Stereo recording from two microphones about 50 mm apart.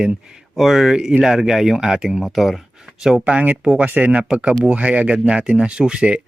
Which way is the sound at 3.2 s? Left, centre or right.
Right.